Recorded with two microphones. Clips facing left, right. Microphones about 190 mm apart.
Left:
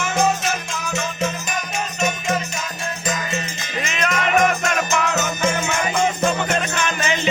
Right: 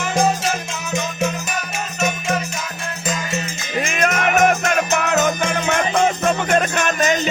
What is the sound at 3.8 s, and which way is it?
Music, 50° right (ahead or behind).